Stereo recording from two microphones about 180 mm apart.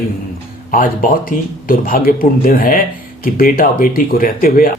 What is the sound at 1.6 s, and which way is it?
Speech, 50° left (ahead or behind).